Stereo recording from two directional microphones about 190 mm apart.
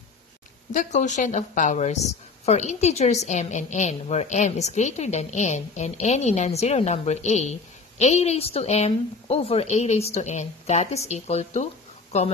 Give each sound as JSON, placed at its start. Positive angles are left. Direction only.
{"t": 0.7, "sound": "a woman's voice", "side_deg": 40}